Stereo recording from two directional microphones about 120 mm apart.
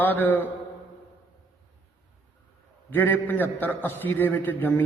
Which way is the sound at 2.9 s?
15° left (ahead or behind).